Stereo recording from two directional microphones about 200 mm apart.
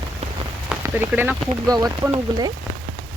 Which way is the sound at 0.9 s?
10° right (ahead or behind).